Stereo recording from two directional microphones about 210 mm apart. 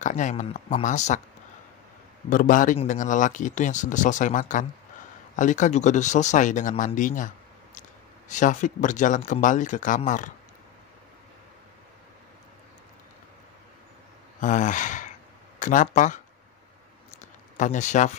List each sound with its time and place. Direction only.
0.0 s speech: 35° left (ahead or behind)
2.2 s speech: 40° left (ahead or behind)
8.3 s speech: 35° left (ahead or behind)
14.4 s speech: 35° left (ahead or behind)
17.6 s speech: 35° left (ahead or behind)